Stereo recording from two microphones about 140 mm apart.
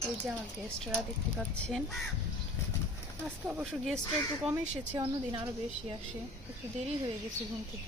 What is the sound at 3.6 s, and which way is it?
Speech, 5° left (ahead or behind).